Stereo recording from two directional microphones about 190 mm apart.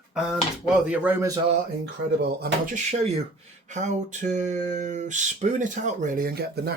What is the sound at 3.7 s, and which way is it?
Speech, 40° right (ahead or behind).